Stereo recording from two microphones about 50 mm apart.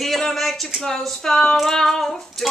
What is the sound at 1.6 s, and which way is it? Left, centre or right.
Speech, centre.